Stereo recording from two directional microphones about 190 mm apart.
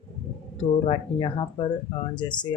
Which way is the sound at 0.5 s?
30° left (ahead or behind).